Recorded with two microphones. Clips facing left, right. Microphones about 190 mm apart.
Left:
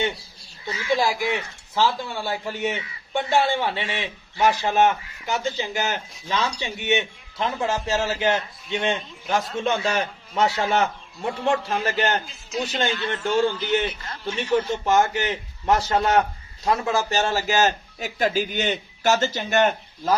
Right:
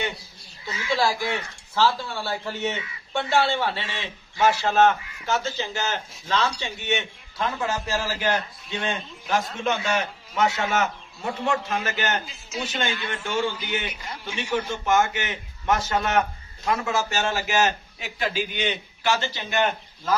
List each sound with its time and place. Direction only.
0.6 s a man's voice: 20° left (ahead or behind)
12.2 s a man's voice: centre (ahead or behind)
13.8 s a man's voice: 10° right (ahead or behind)
14.5 s a man's voice: 35° left (ahead or behind)